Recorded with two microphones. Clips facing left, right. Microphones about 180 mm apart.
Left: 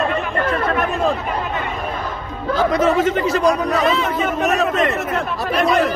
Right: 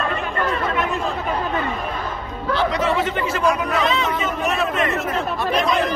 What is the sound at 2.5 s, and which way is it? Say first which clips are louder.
Speech: left 4 dB; 45° left (ahead or behind).